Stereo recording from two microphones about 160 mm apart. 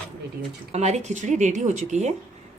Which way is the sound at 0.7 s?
45° right (ahead or behind).